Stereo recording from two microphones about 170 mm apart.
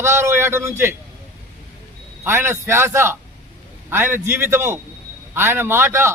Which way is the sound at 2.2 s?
15° right (ahead or behind).